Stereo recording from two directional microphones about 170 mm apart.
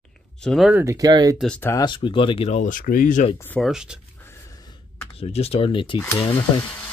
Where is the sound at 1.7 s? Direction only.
25° left (ahead or behind); by 3.3 s 50° left (ahead or behind).